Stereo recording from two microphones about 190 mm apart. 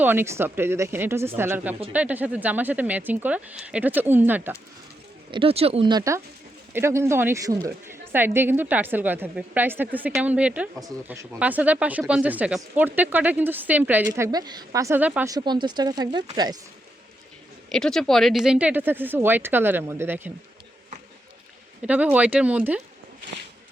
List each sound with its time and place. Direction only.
0.0 s speech: 10° right (ahead or behind)
5.3 s speech: 30° right (ahead or behind); by 10.7 s 5° right (ahead or behind)
10.8 s speech: 15° right (ahead or behind)
14.1 s speech: 20° right (ahead or behind)
17.7 s speech: 5° left (ahead or behind)
21.8 s speech: 5° right (ahead or behind)